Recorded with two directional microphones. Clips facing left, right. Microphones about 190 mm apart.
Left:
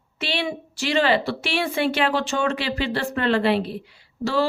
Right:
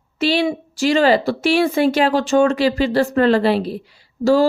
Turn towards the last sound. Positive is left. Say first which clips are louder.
# right 8 dB
turn(degrees=-45)  # may be behind; listen again after turning